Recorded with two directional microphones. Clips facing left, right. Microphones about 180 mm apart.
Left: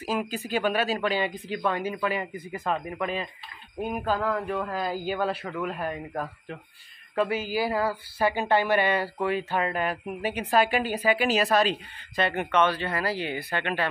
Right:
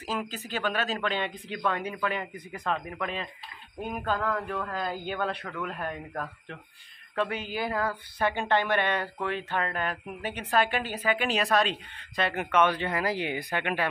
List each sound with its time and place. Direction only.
0.0 s speech: 10° left (ahead or behind); by 13.8 s 15° right (ahead or behind)